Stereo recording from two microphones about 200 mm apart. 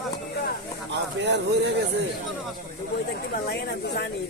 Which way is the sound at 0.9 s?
60° right (ahead or behind).